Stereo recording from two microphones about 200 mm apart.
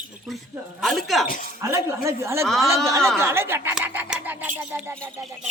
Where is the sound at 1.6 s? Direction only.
15° right (ahead or behind).